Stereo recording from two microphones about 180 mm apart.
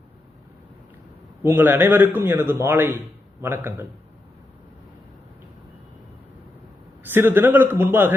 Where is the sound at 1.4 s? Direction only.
10° right (ahead or behind).